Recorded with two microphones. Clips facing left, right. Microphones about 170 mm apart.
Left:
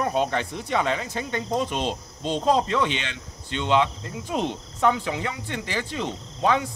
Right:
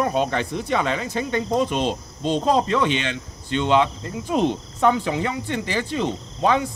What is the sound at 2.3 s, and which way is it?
Speech, 55° right (ahead or behind).